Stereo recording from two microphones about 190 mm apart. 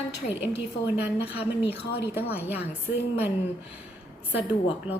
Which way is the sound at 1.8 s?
60° left (ahead or behind).